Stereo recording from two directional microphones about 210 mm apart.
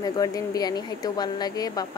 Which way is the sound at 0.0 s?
15° left (ahead or behind).